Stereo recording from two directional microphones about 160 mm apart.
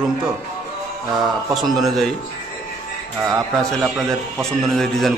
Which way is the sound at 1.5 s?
Centre (ahead or behind).